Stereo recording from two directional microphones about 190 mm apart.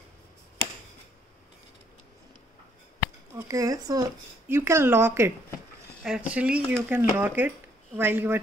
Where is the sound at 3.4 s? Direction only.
15° right (ahead or behind).